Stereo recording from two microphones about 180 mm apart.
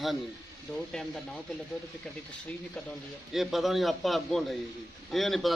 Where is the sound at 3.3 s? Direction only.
Centre (ahead or behind).